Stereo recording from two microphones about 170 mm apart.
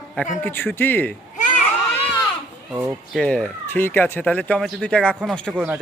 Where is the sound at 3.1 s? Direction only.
5° left (ahead or behind).